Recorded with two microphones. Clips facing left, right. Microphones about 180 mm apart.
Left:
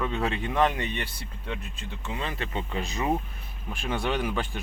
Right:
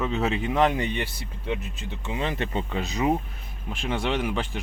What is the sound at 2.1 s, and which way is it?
Speech, 25° right (ahead or behind).